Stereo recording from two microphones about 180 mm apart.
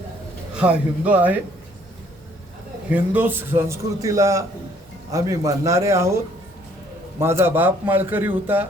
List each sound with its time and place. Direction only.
0.5 s a man's voice: 5° right (ahead or behind)
2.9 s a man's voice: 10° right (ahead or behind)